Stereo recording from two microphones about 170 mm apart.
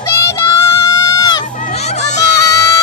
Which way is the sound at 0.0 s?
20° left (ahead or behind).